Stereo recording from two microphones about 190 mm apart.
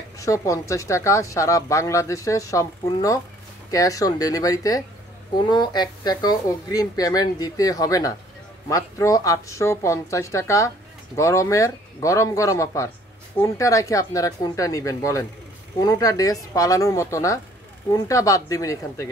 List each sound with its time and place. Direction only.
0.2 s a woman's voice: 15° left (ahead or behind)